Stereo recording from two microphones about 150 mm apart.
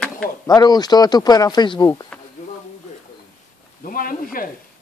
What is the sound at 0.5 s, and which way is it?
Speech, 25° left (ahead or behind).